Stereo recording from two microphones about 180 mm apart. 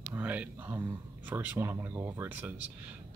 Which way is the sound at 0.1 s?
10° right (ahead or behind).